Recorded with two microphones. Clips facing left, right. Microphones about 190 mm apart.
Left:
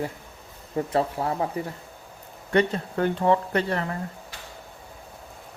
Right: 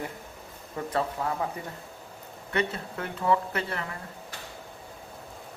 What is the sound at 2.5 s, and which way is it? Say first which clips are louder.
Speech: left 7 dB; 35° left (ahead or behind).